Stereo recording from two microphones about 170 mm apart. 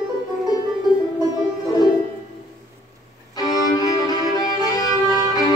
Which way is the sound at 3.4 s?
25° left (ahead or behind).